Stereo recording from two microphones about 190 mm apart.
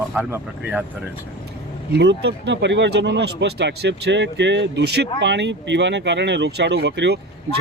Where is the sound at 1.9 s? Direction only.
60° right (ahead or behind).